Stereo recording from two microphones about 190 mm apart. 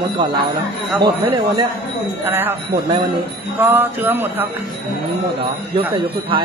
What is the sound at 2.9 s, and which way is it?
Speech, 25° right (ahead or behind).